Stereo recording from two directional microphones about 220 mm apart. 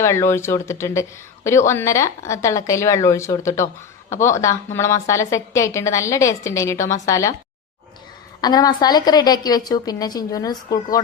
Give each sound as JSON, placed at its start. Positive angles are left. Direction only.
{"t": 0.0, "sound": "a woman's voice", "side_deg": 10}
{"t": 8.4, "sound": "a woman's voice", "side_deg": 15}